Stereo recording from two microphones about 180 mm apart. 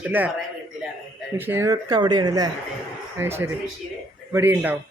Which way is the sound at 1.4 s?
15° right (ahead or behind).